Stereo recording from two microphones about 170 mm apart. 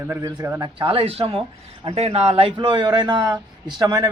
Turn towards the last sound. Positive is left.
turn(degrees=-20)  # may be behind; listen again after turning